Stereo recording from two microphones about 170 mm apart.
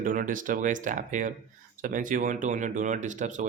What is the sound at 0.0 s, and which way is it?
Speech, 50° right (ahead or behind).